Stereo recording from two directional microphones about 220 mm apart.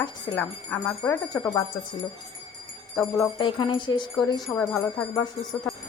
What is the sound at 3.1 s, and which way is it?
Speech, 20° left (ahead or behind).